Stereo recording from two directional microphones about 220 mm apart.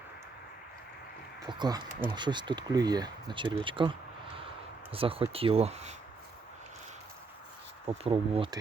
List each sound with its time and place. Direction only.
1.5 s speech: 20° right (ahead or behind)
7.9 s speech: 25° right (ahead or behind)